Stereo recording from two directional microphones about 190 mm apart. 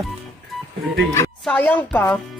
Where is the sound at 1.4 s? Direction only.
5° left (ahead or behind).